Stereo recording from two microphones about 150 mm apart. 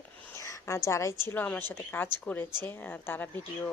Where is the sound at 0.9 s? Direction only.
20° left (ahead or behind).